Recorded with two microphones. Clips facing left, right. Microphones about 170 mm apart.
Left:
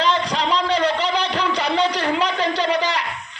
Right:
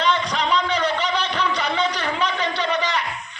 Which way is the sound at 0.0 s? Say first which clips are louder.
Left 1 dB; 30° left (ahead or behind).